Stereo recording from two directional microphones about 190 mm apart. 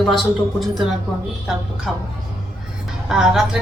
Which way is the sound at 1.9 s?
Centre (ahead or behind).